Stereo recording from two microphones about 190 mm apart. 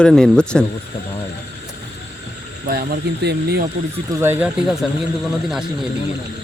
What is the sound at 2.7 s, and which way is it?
Speech, 60° right (ahead or behind).